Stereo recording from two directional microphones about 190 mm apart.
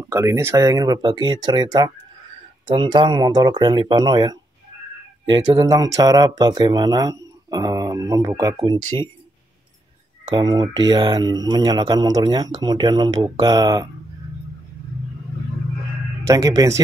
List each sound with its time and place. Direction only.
0.0 s speech: 15° right (ahead or behind)
10.3 s speech: 20° right (ahead or behind)
16.3 s speech: 15° right (ahead or behind)